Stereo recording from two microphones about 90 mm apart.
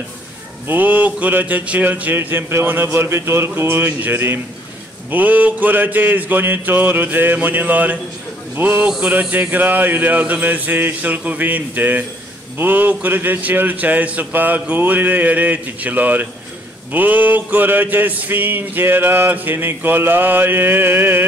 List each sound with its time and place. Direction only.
0.7 s mantra: 20° right (ahead or behind)